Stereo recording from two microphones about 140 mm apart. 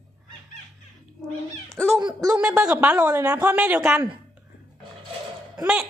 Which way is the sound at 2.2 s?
10° right (ahead or behind).